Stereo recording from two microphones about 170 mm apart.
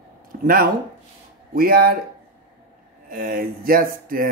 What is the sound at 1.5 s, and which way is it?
Speech, 60° right (ahead or behind).